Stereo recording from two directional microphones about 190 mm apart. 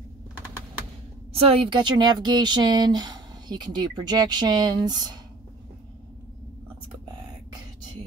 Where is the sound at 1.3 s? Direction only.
30° right (ahead or behind).